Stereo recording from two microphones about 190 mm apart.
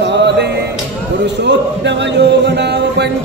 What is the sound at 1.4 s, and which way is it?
Speech, 65° right (ahead or behind).